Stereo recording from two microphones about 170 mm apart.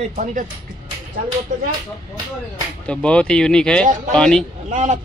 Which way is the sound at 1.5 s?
45° right (ahead or behind).